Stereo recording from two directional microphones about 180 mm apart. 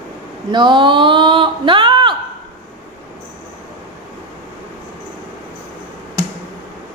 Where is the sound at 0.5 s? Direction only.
25° right (ahead or behind).